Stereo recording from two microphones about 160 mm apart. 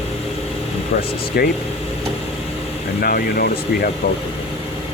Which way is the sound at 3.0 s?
70° left (ahead or behind).